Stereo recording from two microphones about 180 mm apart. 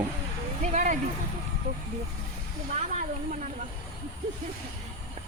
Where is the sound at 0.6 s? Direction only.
45° right (ahead or behind).